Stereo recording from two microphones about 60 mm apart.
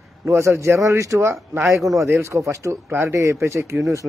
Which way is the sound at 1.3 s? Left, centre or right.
Right.